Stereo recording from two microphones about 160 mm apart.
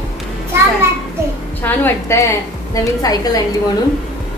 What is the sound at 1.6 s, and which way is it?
A woman's voice, 15° left (ahead or behind).